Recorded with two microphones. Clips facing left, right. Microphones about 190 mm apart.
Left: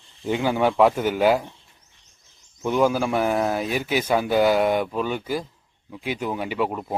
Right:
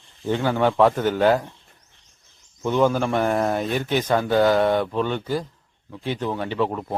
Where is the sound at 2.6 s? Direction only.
10° left (ahead or behind).